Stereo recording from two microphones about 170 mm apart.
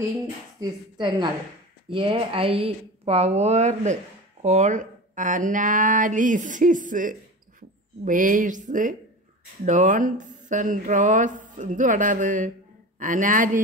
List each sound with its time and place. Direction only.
0.6 s a woman's voice: 25° right (ahead or behind); by 13.6 s 50° right (ahead or behind)